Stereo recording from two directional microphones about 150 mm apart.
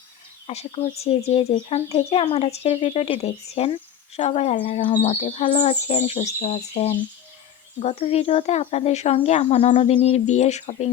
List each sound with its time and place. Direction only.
0.4 s speech: 45° left (ahead or behind)